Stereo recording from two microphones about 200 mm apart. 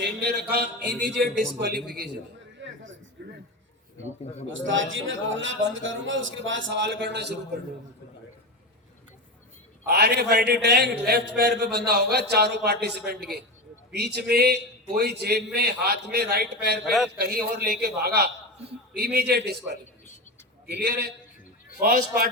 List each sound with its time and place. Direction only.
0.0 s a man's voice: 55° right (ahead or behind)
2.6 s a sound: 65° right (ahead or behind)
4.5 s a man's voice: 70° right (ahead or behind)
9.8 s a man's voice: 55° right (ahead or behind)
13.9 s a man's voice: 55° right (ahead or behind)
16.8 s a man's voice: centre (ahead or behind)
17.2 s a man's voice: 50° right (ahead or behind)